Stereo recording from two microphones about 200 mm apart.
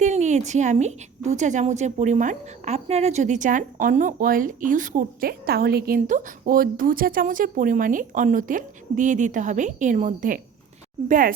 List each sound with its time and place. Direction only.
0.0 s a woman's voice: 35° right (ahead or behind)